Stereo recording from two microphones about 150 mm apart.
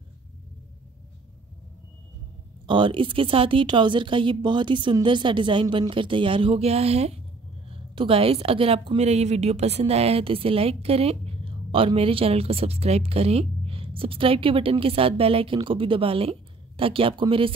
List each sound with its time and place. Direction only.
2.6 s a woman's voice: 30° right (ahead or behind)